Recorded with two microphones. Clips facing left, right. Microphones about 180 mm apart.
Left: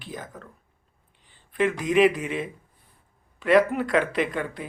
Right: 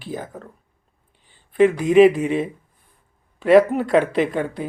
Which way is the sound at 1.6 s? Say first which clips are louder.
Right 7 dB; 45° right (ahead or behind).